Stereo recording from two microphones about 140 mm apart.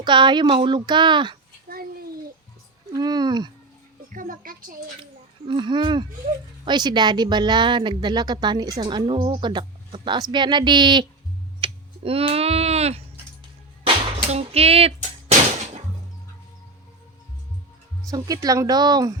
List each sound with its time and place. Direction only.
0.0 s speech: 35° right (ahead or behind)
1.6 s a sound: 90° right
2.9 s speech: 30° right (ahead or behind)
4.1 s speech: 75° right (ahead or behind)
5.5 s speech: 35° right (ahead or behind)
14.3 s speech: 45° right (ahead or behind)
18.1 s speech: 25° right (ahead or behind)